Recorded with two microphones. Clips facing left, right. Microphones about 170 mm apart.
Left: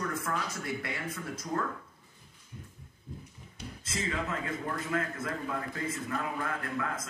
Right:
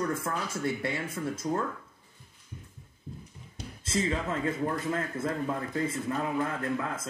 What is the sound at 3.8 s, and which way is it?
Speech, 30° right (ahead or behind).